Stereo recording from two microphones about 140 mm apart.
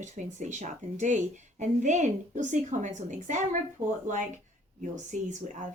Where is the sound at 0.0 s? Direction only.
60° right (ahead or behind).